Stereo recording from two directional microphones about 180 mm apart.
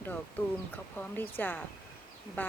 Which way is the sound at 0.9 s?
10° left (ahead or behind).